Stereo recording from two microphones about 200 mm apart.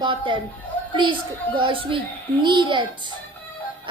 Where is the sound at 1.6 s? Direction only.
25° right (ahead or behind).